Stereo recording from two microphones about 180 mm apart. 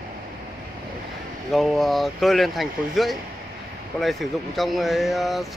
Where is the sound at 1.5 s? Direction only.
Centre (ahead or behind).